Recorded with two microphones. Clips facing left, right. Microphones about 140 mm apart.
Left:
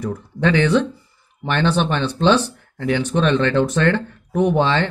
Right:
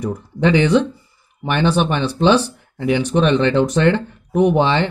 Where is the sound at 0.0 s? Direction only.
15° right (ahead or behind).